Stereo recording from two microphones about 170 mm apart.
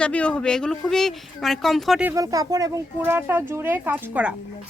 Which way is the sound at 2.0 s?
20° right (ahead or behind).